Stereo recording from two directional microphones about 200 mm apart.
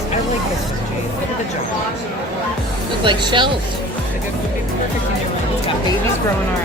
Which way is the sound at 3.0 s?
25° right (ahead or behind).